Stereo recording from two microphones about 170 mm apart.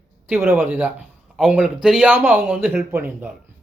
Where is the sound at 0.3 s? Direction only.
15° right (ahead or behind).